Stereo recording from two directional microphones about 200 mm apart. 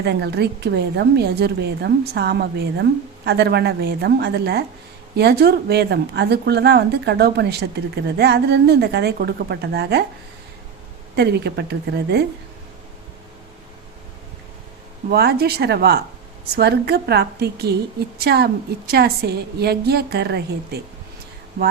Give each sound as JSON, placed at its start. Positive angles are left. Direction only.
{"t": 0.0, "sound": "speech", "side_deg": -55}
{"t": 11.2, "sound": "speech", "side_deg": -55}
{"t": 15.1, "sound": "a woman's voice", "side_deg": -55}